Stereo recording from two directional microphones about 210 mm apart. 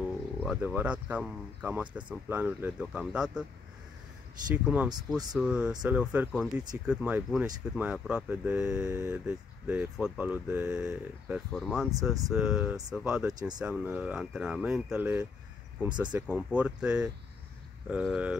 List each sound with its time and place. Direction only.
0.0 s speech: centre (ahead or behind)
4.6 s speech: 5° right (ahead or behind)
5.7 s speech: 20° right (ahead or behind)
5.9 s speech: 5° right (ahead or behind)
13.3 s speech: 20° right (ahead or behind)
13.6 s speech: 5° right (ahead or behind)